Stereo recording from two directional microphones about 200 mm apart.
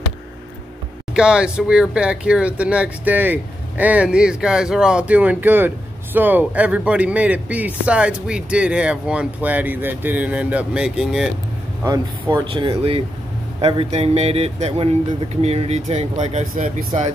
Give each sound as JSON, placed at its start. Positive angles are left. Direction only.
{"t": 1.1, "sound": "a man's voice", "side_deg": -5}
{"t": 11.8, "sound": "speech", "side_deg": -15}